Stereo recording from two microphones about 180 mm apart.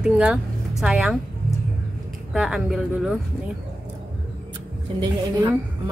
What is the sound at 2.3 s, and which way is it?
Speech, 5° right (ahead or behind).